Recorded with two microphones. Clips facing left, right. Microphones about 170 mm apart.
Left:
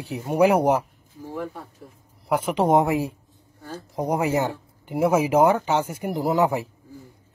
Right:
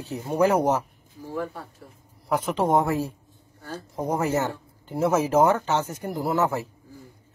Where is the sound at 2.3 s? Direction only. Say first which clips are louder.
Left 3 dB; 10° left (ahead or behind).